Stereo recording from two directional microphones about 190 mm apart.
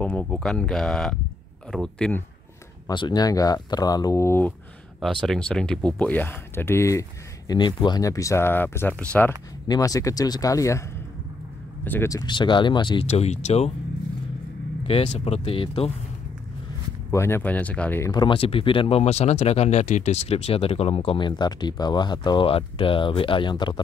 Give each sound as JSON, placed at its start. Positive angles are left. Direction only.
{"t": 0.0, "sound": "speech", "side_deg": 5}
{"t": 2.9, "sound": "speech", "side_deg": 25}
{"t": 5.0, "sound": "speech", "side_deg": 0}
{"t": 9.7, "sound": "speech", "side_deg": 20}
{"t": 11.8, "sound": "speech", "side_deg": 10}
{"t": 14.8, "sound": "speech", "side_deg": 30}
{"t": 17.1, "sound": "speech", "side_deg": 15}